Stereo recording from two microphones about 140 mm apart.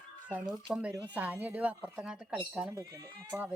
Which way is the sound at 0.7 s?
10° right (ahead or behind).